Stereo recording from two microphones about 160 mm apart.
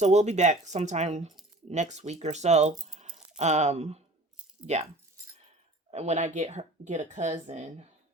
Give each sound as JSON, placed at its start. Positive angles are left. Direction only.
{"t": 0.0, "sound": "a woman's voice", "side_deg": -45}
{"t": 5.9, "sound": "a woman's voice", "side_deg": -45}